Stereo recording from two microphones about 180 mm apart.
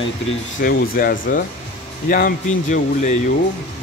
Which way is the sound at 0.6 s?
55° left (ahead or behind).